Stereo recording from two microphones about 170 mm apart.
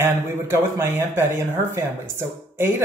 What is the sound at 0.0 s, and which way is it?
Speech, 15° right (ahead or behind).